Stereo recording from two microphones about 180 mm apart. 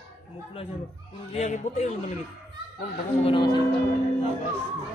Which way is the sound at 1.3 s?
40° left (ahead or behind).